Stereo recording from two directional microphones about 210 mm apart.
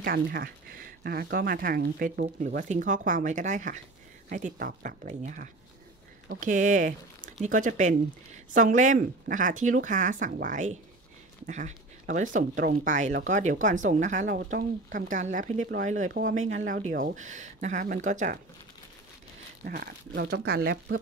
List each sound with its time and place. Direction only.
0.0 s speech: 45° right (ahead or behind)
19.6 s speech: 45° right (ahead or behind)